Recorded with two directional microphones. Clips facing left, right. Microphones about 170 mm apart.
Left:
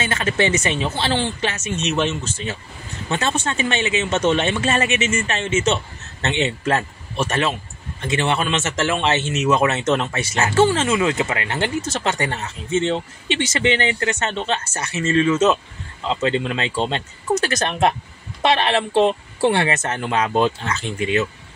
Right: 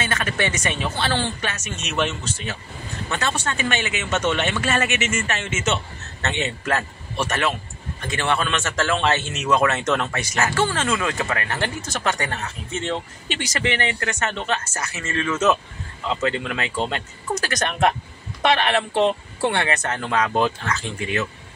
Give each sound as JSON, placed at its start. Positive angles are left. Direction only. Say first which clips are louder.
{"t": 0.1, "sound": "speech", "louder": "left 5 dB", "side_deg": 25}